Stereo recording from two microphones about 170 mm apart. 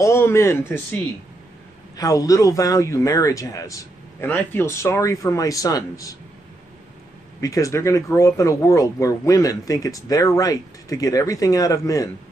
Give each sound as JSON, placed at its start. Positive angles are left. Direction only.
{"t": 0.0, "sound": "speech", "side_deg": 15}
{"t": 2.0, "sound": "speech", "side_deg": 20}
{"t": 7.3, "sound": "speech", "side_deg": 20}